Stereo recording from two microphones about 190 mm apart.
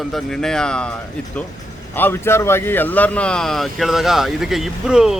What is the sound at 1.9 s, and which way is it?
Speech, 10° left (ahead or behind).